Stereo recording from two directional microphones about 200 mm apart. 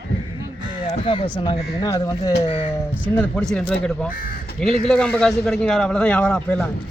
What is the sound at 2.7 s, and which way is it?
Speech, 10° left (ahead or behind).